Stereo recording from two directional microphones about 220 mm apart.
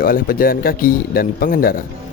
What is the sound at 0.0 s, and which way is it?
Speech, 40° left (ahead or behind).